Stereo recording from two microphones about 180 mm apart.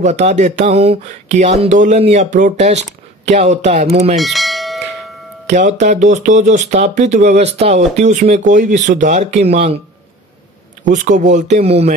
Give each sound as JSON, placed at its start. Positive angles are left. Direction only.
{"t": 0.0, "sound": "speech", "side_deg": -40}
{"t": 4.2, "sound": "church bell", "side_deg": 0}
{"t": 5.5, "sound": "speech", "side_deg": -45}
{"t": 10.8, "sound": "speech", "side_deg": -45}